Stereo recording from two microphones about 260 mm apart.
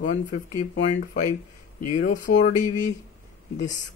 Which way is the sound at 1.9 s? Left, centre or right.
Left.